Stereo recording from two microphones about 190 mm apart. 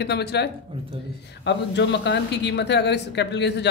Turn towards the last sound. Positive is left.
turn(degrees=65)  # may be behind; listen again after turning